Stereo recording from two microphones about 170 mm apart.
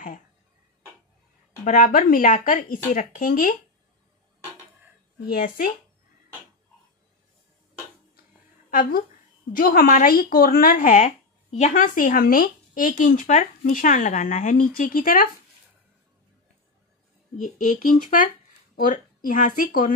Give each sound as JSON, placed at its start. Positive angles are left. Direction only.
{"t": 1.6, "sound": "speech", "side_deg": 55}
{"t": 5.2, "sound": "speech", "side_deg": 55}
{"t": 8.6, "sound": "a woman's voice", "side_deg": 55}
{"t": 17.4, "sound": "speech", "side_deg": 50}